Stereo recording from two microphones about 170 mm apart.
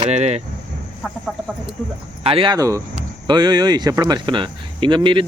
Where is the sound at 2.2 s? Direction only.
30° right (ahead or behind).